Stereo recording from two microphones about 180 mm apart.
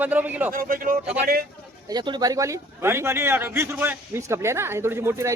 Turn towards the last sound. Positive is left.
turn(degrees=-15)  # may be behind; listen again after turning